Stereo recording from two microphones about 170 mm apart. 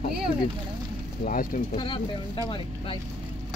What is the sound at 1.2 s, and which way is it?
Speech, 50° left (ahead or behind).